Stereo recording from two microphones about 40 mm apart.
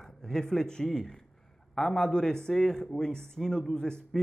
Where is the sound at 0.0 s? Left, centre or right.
Centre.